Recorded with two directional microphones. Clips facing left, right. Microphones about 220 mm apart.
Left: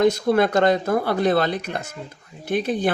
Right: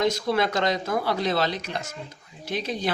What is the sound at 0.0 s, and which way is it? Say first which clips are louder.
Speech: left 6 dB; 50° left (ahead or behind).